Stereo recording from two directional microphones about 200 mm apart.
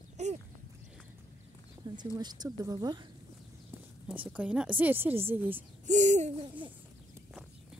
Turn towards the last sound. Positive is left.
turn(degrees=-35)  # may be behind; listen again after turning